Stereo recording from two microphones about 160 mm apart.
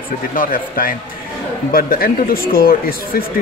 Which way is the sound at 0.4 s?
60° left (ahead or behind).